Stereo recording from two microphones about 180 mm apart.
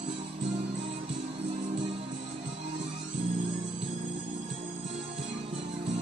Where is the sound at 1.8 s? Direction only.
40° right (ahead or behind).